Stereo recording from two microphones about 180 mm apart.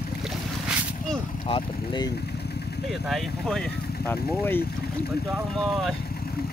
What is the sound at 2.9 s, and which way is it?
Speech, centre (ahead or behind).